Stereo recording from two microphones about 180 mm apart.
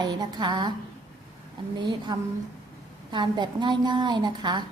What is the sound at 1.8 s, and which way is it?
A woman's voice, 25° right (ahead or behind).